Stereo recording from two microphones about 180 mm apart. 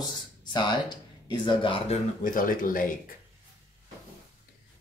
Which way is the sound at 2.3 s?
50° left (ahead or behind).